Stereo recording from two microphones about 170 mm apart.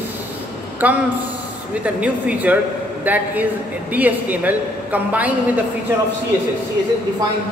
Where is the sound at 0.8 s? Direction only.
10° right (ahead or behind).